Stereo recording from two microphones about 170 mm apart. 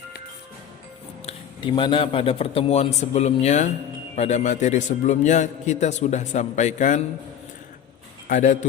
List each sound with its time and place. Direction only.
1.3 s a man's voice: 30° left (ahead or behind); by 7.0 s 45° left (ahead or behind)
8.3 s a man's voice: 50° left (ahead or behind)